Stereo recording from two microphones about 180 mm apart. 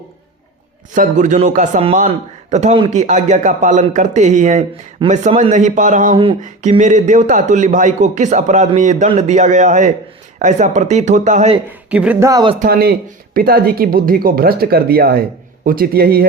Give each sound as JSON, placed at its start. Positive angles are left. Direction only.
{"t": 0.9, "sound": "speech", "side_deg": -45}
{"t": 11.9, "sound": "speech", "side_deg": -5}
{"t": 12.3, "sound": "speech", "side_deg": -25}
{"t": 12.5, "sound": "speech", "side_deg": -55}